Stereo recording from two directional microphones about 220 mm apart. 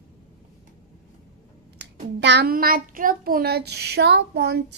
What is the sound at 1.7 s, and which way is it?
A child's voice, 50° right (ahead or behind).